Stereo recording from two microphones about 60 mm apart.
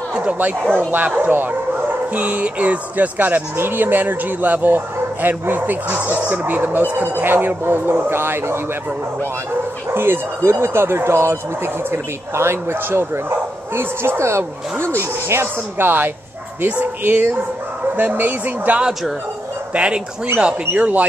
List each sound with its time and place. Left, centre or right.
0.1 s speech: centre; by 8.5 s right
9.9 s speech: right
16.6 s speech: right
19.7 s speech: centre